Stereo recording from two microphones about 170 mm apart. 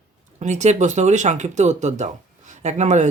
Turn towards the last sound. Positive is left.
turn(degrees=-45)  # may be behind; listen again after turning